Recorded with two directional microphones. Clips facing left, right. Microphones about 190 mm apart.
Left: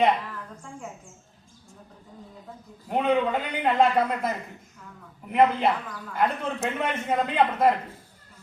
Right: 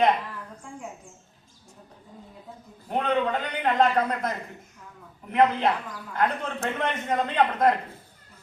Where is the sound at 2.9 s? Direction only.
5° left (ahead or behind).